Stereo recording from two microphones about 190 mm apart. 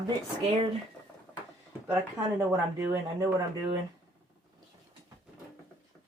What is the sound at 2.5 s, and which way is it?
Speech, 15° right (ahead or behind).